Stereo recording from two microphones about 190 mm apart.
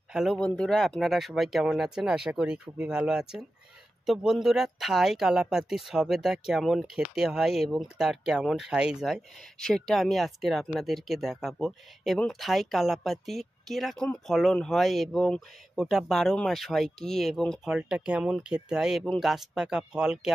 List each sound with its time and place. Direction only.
0.1 s speech: centre (ahead or behind)